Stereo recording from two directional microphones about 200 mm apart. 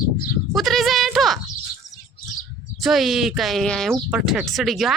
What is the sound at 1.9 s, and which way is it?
Bird, 15° left (ahead or behind).